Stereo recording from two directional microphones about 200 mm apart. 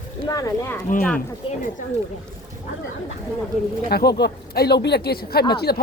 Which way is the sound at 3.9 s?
55° left (ahead or behind).